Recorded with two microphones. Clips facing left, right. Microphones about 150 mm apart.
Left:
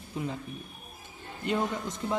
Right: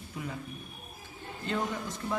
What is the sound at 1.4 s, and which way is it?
Speech, 20° left (ahead or behind).